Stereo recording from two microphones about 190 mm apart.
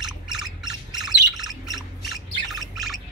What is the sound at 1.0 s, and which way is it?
Bird, centre (ahead or behind).